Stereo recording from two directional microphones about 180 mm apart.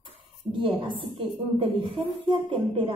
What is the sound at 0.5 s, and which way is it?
Speech, 30° right (ahead or behind).